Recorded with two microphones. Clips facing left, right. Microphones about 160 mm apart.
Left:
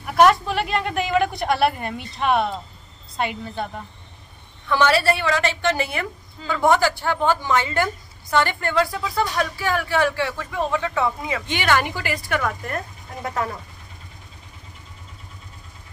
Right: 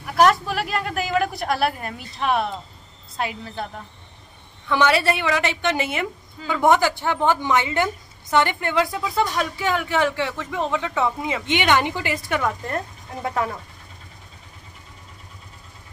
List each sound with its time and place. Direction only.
0.0 s speech: centre (ahead or behind)
4.6 s speech: 15° right (ahead or behind)